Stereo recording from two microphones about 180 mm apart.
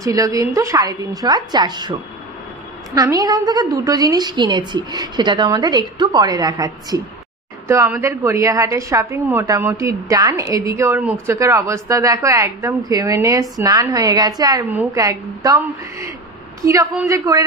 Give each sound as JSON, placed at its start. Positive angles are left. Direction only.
{"t": 0.0, "sound": "a woman's voice", "side_deg": -20}
{"t": 14.7, "sound": "a woman's voice", "side_deg": -10}